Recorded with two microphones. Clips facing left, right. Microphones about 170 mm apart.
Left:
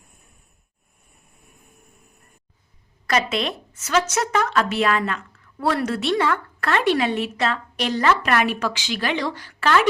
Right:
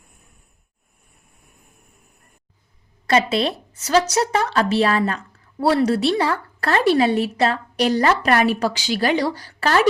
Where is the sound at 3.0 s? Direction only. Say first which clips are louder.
Right 4 dB; 30° right (ahead or behind).